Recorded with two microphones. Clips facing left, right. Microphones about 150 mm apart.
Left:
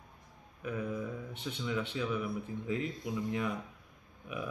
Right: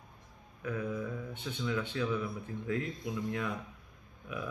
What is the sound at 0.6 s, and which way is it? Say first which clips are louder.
Speech: right 1 dB; 10° left (ahead or behind).